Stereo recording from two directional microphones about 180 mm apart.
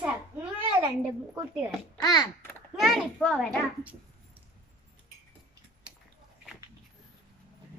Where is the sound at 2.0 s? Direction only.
20° left (ahead or behind).